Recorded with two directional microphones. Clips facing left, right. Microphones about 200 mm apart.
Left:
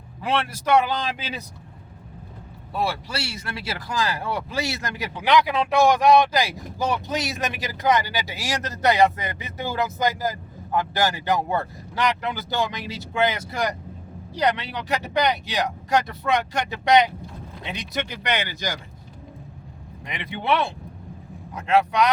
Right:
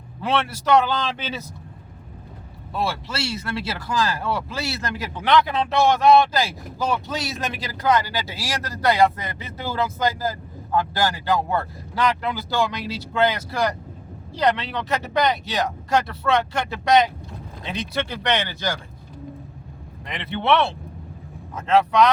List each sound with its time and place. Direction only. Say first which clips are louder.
0.2 s speech: right 2 dB; 15° left (ahead or behind)
2.7 s speech: even; 10° left (ahead or behind)
20.1 s speech: right 3 dB; 10° left (ahead or behind)